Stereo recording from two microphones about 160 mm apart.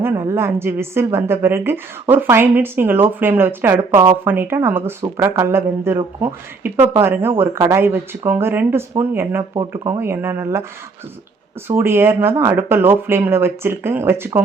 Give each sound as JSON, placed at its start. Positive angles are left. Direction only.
{"t": 0.0, "sound": "a woman's voice", "side_deg": -15}
{"t": 9.4, "sound": "speech", "side_deg": -25}
{"t": 10.0, "sound": "a woman's voice", "side_deg": -15}
{"t": 11.7, "sound": "a woman's voice", "side_deg": -15}